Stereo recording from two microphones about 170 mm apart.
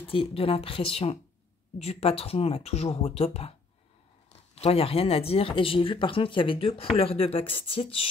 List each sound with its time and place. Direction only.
0.1 s speech: 35° left (ahead or behind)